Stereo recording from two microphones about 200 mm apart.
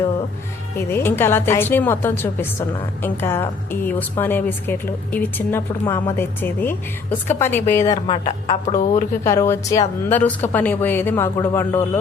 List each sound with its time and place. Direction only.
0.8 s a woman's voice: 10° left (ahead or behind)
8.0 s a woman's voice: 25° left (ahead or behind)
9.2 s a woman's voice: 15° left (ahead or behind)